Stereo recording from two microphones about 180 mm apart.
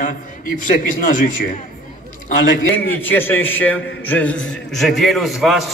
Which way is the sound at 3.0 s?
10° left (ahead or behind).